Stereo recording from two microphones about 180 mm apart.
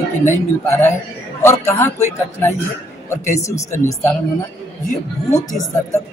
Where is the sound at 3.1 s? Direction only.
15° left (ahead or behind).